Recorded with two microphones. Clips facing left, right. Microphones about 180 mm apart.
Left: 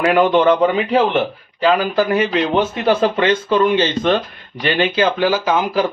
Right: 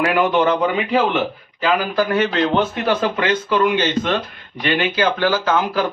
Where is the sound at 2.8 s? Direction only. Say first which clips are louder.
Left 4 dB; 30° left (ahead or behind).